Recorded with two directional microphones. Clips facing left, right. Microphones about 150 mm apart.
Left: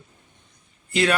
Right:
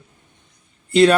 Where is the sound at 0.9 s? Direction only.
30° right (ahead or behind).